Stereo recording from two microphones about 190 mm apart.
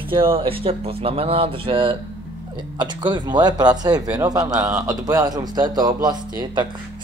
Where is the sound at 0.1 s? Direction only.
25° right (ahead or behind).